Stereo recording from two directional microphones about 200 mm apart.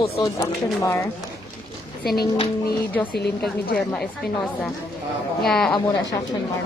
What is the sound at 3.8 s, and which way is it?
Speech, centre (ahead or behind).